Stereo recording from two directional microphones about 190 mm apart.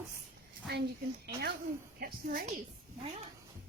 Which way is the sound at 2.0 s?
50° right (ahead or behind).